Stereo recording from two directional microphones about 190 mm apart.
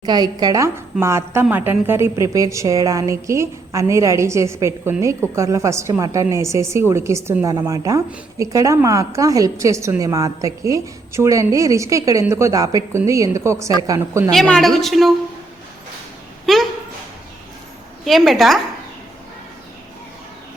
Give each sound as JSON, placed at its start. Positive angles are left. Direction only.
{"t": 0.0, "sound": "a woman's voice", "side_deg": -20}
{"t": 14.3, "sound": "a woman's voice", "side_deg": 5}
{"t": 16.5, "sound": "a sound", "side_deg": 0}
{"t": 18.0, "sound": "a woman's voice", "side_deg": 0}